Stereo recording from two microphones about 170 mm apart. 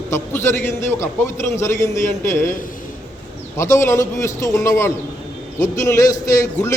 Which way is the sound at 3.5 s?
15° left (ahead or behind).